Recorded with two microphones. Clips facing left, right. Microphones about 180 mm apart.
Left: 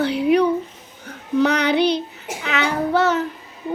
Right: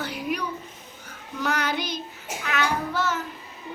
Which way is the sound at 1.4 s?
70° left (ahead or behind).